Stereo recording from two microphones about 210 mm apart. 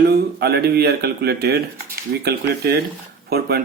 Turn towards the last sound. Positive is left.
turn(degrees=-50)  # may be behind; listen again after turning